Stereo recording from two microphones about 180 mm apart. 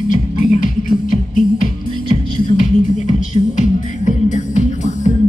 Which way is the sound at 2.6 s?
40° left (ahead or behind).